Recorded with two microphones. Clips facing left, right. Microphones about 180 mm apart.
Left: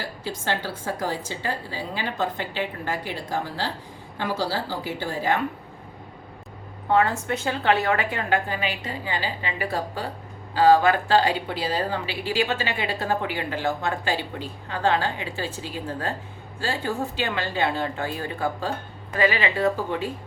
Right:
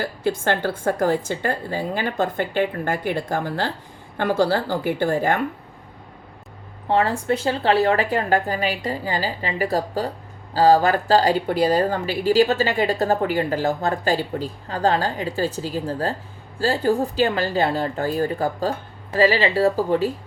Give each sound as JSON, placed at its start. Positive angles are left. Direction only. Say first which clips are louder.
{"t": 0.0, "sound": "a woman's voice", "louder": "right 8 dB", "side_deg": -55}
{"t": 6.8, "sound": "speech", "louder": "right 2 dB", "side_deg": -30}